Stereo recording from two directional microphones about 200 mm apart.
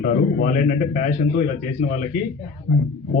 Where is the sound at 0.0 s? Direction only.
45° left (ahead or behind).